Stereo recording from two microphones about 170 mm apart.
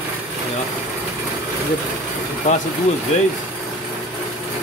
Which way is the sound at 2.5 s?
45° left (ahead or behind).